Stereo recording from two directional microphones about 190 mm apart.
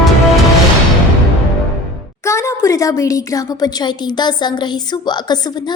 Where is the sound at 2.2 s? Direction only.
15° left (ahead or behind).